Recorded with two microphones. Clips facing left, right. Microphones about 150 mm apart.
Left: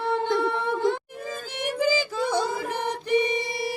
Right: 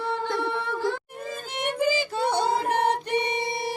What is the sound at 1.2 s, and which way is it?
Music, 90° left.